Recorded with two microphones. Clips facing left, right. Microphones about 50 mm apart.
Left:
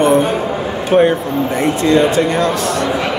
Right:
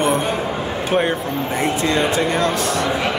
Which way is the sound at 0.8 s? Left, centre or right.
Centre.